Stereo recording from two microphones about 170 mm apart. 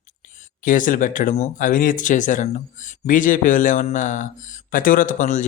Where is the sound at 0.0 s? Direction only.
50° left (ahead or behind).